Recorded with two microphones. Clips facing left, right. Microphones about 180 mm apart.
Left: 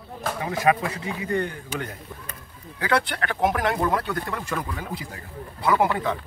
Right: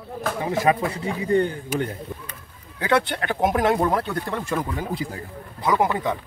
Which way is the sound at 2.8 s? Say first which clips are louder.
Right 3 dB; 25° right (ahead or behind).